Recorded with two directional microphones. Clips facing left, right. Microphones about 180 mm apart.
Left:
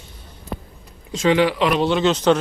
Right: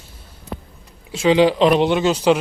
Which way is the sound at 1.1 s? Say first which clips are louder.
Right 3 dB; 10° right (ahead or behind).